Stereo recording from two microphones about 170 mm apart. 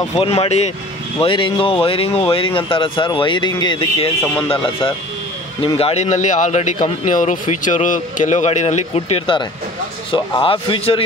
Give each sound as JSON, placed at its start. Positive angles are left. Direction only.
{"t": 0.2, "sound": "speech", "side_deg": 35}
{"t": 5.6, "sound": "speech", "side_deg": 35}